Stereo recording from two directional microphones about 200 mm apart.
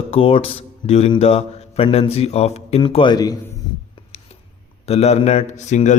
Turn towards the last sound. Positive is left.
turn(degrees=35)  # may be behind; listen again after turning